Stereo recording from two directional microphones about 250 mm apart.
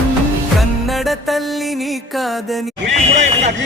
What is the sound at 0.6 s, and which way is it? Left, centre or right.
Music, centre.